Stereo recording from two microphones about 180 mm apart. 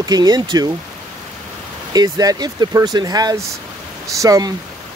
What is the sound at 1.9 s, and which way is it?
Speech, 20° right (ahead or behind).